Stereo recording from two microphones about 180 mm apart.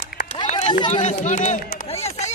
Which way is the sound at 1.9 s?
35° left (ahead or behind).